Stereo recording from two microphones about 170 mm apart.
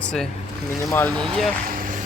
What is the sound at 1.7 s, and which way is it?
Vehicle, 55° right (ahead or behind).